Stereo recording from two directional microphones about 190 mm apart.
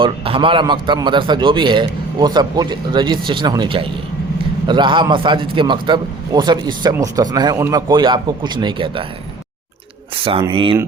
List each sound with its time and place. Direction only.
0.0 s a man's voice: 30° right (ahead or behind)
10.2 s a man's voice: 30° right (ahead or behind)